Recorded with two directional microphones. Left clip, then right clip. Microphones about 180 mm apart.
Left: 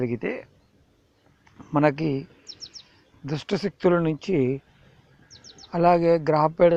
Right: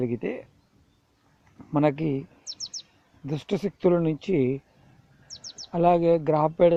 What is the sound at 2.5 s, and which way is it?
Chirp, 45° right (ahead or behind).